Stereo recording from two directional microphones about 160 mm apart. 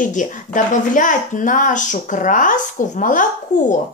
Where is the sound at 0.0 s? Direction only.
50° left (ahead or behind).